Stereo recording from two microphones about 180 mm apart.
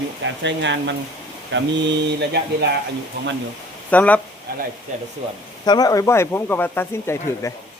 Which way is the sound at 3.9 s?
10° left (ahead or behind).